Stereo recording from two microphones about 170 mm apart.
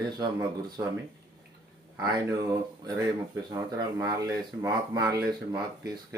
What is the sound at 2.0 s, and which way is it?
Speech, 20° right (ahead or behind).